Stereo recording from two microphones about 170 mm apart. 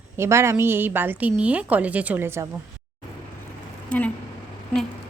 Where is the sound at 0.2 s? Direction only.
15° right (ahead or behind).